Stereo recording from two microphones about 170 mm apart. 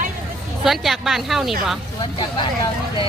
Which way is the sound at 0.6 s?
Centre (ahead or behind).